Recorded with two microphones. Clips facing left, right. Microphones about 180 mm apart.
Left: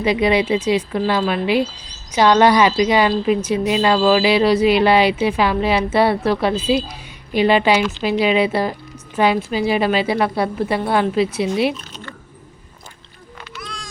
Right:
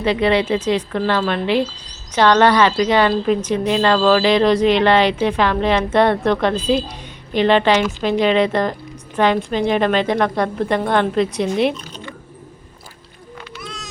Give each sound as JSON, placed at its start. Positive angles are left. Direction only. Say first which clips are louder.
{"t": 0.0, "sound": "speech", "louder": "even", "side_deg": 10}
{"t": 13.6, "sound": "boat", "louder": "left 1 dB", "side_deg": -25}